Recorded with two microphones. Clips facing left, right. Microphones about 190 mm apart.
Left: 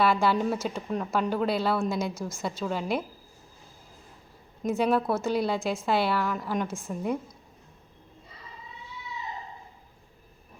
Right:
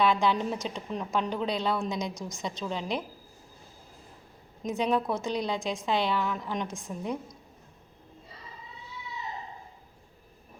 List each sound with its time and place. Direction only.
0.0 s speech: 5° left (ahead or behind)
2.1 s a woman's voice: 15° right (ahead or behind)
2.4 s speech: 5° left (ahead or behind)
4.6 s a woman's voice: 5° left (ahead or behind)